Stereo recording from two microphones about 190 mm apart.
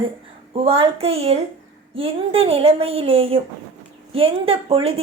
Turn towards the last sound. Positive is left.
turn(degrees=-30)  # may be behind; listen again after turning